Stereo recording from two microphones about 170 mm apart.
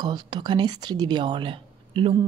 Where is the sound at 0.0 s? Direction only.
25° right (ahead or behind).